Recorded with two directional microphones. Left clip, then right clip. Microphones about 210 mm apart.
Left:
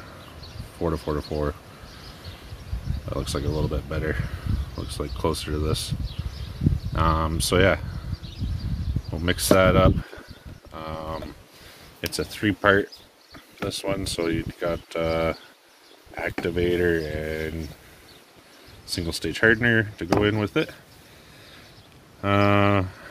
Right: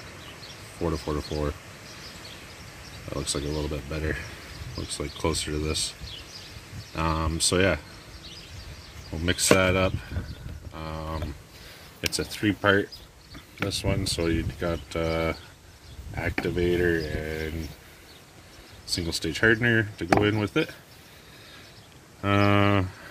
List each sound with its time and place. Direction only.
0.8 s speech: 5° left (ahead or behind)
3.1 s speech: 5° left (ahead or behind)
7.0 s speech: 5° left (ahead or behind)
9.1 s speech: 5° left (ahead or behind)
10.7 s livestock: 5° left (ahead or behind)
12.0 s speech: 10° left (ahead or behind)
18.9 s speech: 10° left (ahead or behind)
22.2 s speech: centre (ahead or behind)